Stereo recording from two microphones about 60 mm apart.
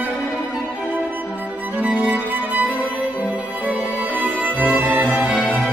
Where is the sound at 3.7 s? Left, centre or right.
Right.